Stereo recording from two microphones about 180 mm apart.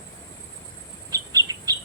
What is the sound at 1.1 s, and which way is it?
Bird, 20° right (ahead or behind).